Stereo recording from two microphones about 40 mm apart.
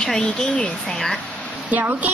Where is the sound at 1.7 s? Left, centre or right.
Right.